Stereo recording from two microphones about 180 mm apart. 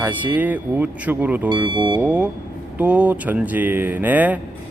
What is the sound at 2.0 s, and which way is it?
A man's voice, 5° right (ahead or behind).